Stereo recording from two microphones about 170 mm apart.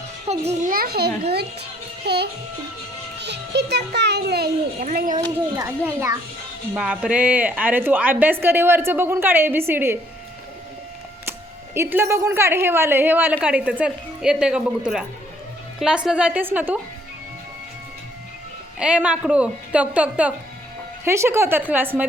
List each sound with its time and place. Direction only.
0.3 s a child's voice: 40° right (ahead or behind)
0.6 s a child's voice: 60° right (ahead or behind)
4.9 s speech: 50° right (ahead or behind)
5.5 s a woman's voice: 15° right (ahead or behind)
11.3 s a woman's voice: 15° right (ahead or behind)
18.8 s a woman's voice: 5° right (ahead or behind)